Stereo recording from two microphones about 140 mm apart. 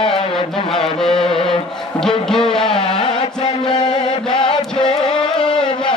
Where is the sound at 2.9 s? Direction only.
40° left (ahead or behind).